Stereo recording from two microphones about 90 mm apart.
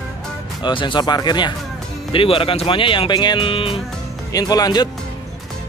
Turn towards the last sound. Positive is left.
turn(degrees=50)  # may be behind; listen again after turning